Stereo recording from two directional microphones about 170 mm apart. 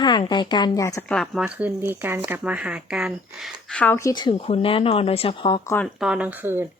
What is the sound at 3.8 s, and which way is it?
Speech, 15° left (ahead or behind).